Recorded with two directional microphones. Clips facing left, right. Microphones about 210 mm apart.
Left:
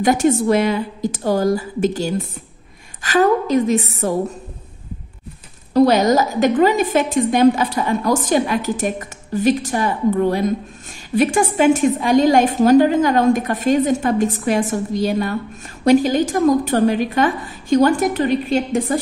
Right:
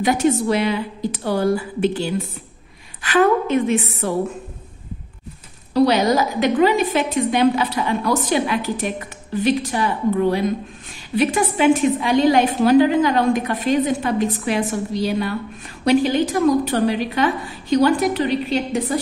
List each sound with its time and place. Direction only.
0.0 s a woman's voice: 45° left (ahead or behind)
5.7 s a woman's voice: 45° left (ahead or behind)